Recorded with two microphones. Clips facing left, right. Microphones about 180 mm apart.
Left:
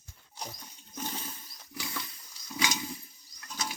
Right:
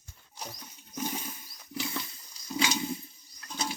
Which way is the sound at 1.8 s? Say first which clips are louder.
Right 4 dB; 25° right (ahead or behind).